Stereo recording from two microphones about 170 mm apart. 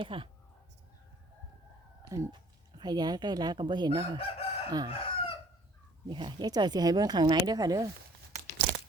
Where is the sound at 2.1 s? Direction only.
20° right (ahead or behind).